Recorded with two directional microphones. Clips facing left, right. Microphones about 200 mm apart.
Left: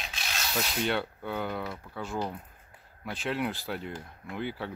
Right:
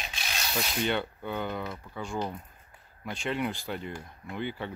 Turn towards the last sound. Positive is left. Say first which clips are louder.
# even
turn(degrees=0)  # may be behind; listen again after turning